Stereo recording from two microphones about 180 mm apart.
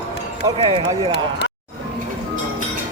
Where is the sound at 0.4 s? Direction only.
25° right (ahead or behind).